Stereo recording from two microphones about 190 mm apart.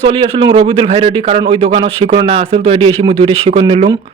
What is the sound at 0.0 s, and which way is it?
A man's voice, 25° right (ahead or behind).